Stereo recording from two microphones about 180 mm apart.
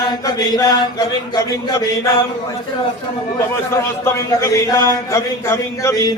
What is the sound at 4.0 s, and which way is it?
Speech, 15° left (ahead or behind).